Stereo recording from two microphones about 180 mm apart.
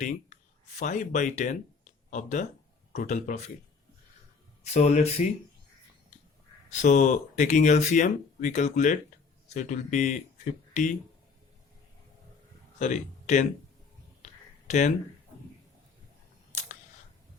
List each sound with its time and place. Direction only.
0.0 s speech: 40° left (ahead or behind)
4.6 s speech: 40° left (ahead or behind)
6.8 s speech: 45° left (ahead or behind)
12.8 s speech: 45° left (ahead or behind)
14.7 s speech: 40° left (ahead or behind)